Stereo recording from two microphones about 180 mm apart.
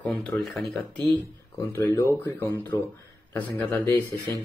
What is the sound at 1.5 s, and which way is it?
Speech, 15° left (ahead or behind).